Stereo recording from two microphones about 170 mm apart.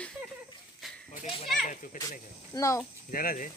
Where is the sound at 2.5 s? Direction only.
20° left (ahead or behind).